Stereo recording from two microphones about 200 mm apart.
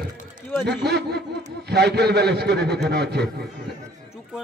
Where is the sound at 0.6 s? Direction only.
55° right (ahead or behind).